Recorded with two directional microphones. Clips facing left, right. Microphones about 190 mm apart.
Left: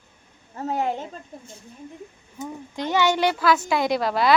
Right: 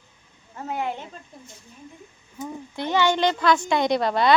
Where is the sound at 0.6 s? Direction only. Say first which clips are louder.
Left 3 dB; 40° left (ahead or behind).